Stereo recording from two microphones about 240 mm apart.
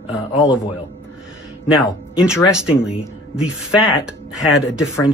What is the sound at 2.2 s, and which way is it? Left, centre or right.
Speech, centre.